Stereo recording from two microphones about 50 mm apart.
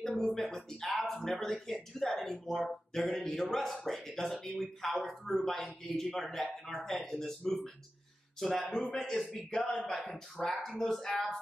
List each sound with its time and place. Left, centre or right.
0.0 s speech: centre
9.6 s speech: centre
9.8 s speech: centre